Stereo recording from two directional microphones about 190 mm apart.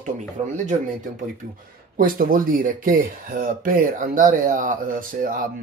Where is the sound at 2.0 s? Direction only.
50° right (ahead or behind).